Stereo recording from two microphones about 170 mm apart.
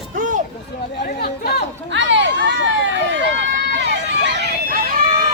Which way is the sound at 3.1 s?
90° right.